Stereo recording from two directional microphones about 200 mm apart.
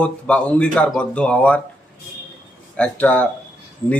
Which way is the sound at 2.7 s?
5° left (ahead or behind).